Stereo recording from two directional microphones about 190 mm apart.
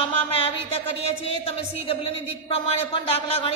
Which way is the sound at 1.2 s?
30° left (ahead or behind).